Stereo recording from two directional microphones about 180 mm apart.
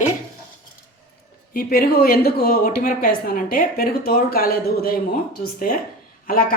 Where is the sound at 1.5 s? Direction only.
55° left (ahead or behind).